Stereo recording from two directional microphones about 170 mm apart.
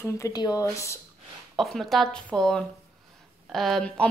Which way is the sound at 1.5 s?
Centre (ahead or behind).